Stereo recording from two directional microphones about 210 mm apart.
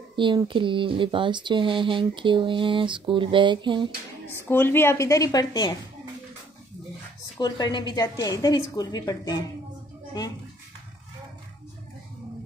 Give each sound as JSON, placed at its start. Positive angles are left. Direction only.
{"t": 0.1, "sound": "speech", "side_deg": -20}
{"t": 4.3, "sound": "a woman's voice", "side_deg": 10}
{"t": 7.3, "sound": "a woman's voice", "side_deg": 20}